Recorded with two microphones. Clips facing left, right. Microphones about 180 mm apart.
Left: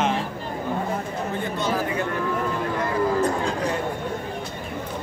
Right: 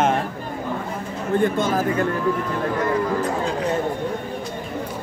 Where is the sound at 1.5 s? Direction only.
50° right (ahead or behind).